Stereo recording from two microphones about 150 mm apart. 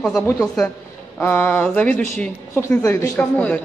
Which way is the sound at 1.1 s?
10° left (ahead or behind).